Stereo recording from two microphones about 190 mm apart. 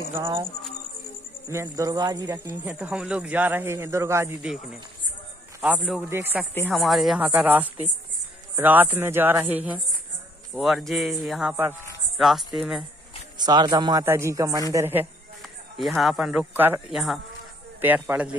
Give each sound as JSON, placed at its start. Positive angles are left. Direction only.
{"t": 1.5, "sound": "speech", "side_deg": -15}
{"t": 5.8, "sound": "a man's voice", "side_deg": 0}
{"t": 6.0, "sound": "speech", "side_deg": -10}
{"t": 6.7, "sound": "a man's voice", "side_deg": 0}
{"t": 13.4, "sound": "speech", "side_deg": -20}
{"t": 15.8, "sound": "a man's voice", "side_deg": 0}